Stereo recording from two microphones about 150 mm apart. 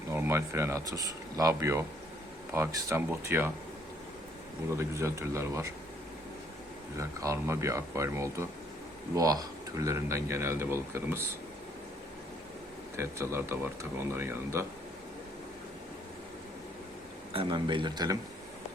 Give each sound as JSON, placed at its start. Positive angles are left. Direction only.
{"t": 0.1, "sound": "speech", "side_deg": -15}
{"t": 4.8, "sound": "speech", "side_deg": -20}
{"t": 6.9, "sound": "speech", "side_deg": -20}
{"t": 13.0, "sound": "speech", "side_deg": -15}
{"t": 17.3, "sound": "speech", "side_deg": -35}